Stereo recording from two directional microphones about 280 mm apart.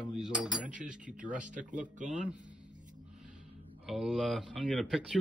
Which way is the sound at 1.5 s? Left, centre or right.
Right.